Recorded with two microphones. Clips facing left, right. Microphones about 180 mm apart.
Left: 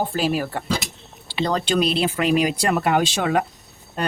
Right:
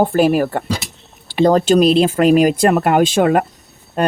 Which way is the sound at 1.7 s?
40° right (ahead or behind).